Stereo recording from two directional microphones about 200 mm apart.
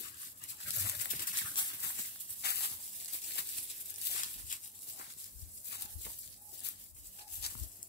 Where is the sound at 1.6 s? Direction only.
25° left (ahead or behind).